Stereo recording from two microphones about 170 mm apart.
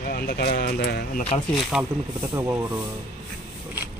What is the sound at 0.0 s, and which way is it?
Speech, 60° left (ahead or behind).